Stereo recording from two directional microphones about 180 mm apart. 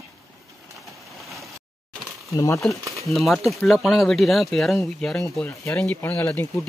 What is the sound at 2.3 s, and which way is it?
Speech, 20° left (ahead or behind).